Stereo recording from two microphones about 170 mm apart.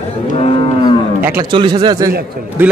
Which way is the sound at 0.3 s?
35° left (ahead or behind).